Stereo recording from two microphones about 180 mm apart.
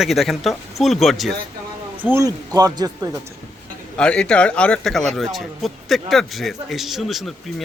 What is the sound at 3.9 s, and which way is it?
Speech, 5° left (ahead or behind).